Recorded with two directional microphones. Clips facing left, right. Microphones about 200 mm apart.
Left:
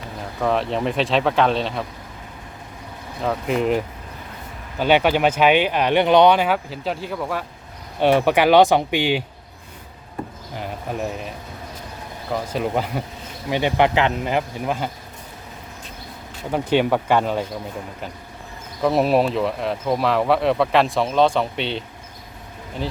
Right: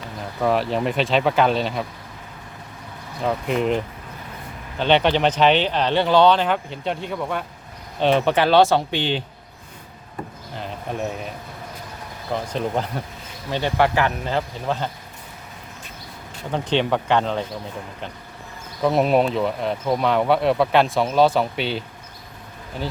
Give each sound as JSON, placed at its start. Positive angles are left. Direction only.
{"t": 0.4, "sound": "speech", "side_deg": 0}
{"t": 3.2, "sound": "speech", "side_deg": 0}
{"t": 10.5, "sound": "a sound", "side_deg": 10}
{"t": 12.3, "sound": "speech", "side_deg": 5}
{"t": 16.5, "sound": "speech", "side_deg": 10}
{"t": 18.8, "sound": "speech", "side_deg": 0}